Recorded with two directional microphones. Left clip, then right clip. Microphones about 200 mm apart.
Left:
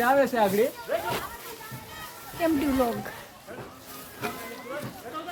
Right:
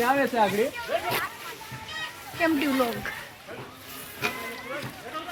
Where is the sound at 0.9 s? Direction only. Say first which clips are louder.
Right 3 dB; 15° left (ahead or behind).